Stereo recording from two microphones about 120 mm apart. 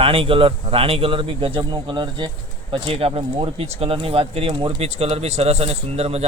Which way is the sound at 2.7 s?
55° right (ahead or behind).